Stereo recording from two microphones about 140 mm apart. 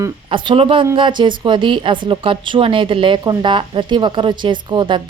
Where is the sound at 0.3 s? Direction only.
35° right (ahead or behind).